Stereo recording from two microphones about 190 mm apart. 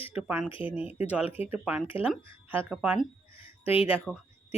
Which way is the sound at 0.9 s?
5° right (ahead or behind).